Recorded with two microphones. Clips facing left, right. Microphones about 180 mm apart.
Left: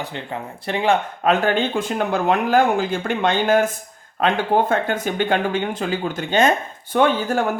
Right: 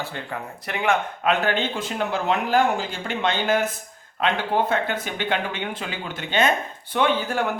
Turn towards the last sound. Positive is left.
turn(degrees=45)  # may be behind; listen again after turning